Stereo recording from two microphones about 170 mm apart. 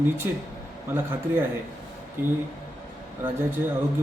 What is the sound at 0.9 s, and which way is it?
A man's voice, 15° right (ahead or behind).